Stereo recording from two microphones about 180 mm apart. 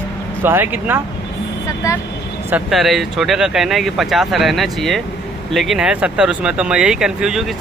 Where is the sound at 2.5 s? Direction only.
5° right (ahead or behind).